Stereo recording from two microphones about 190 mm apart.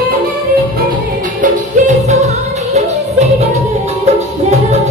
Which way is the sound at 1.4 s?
40° right (ahead or behind).